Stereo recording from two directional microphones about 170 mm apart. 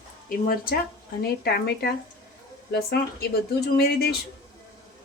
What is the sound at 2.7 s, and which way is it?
Speech, 70° left (ahead or behind).